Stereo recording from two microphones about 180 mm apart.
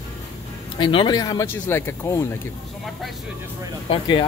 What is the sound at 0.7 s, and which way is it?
Speech, 25° left (ahead or behind).